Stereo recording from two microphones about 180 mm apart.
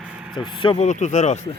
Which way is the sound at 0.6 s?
30° left (ahead or behind).